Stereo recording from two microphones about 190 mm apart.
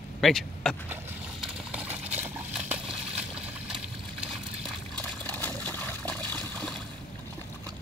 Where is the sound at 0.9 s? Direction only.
5° right (ahead or behind).